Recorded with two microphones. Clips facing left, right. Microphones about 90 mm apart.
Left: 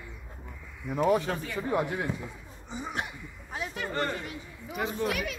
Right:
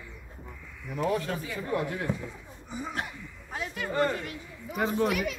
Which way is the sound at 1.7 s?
15° left (ahead or behind).